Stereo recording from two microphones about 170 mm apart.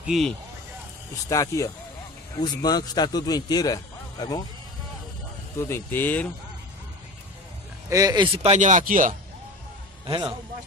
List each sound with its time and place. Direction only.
0.0 s speech: centre (ahead or behind)
1.3 s a man's voice: 20° left (ahead or behind)
5.6 s speech: 15° left (ahead or behind)
7.9 s speech: 20° right (ahead or behind)
8.4 s speech: 40° right (ahead or behind)
10.0 s speech: 25° right (ahead or behind)